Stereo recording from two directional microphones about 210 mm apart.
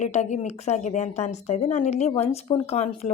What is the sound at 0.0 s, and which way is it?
A woman's voice, 35° left (ahead or behind).